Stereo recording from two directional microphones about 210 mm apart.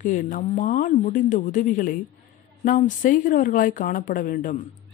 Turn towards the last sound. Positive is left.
turn(degrees=40)  # may be behind; listen again after turning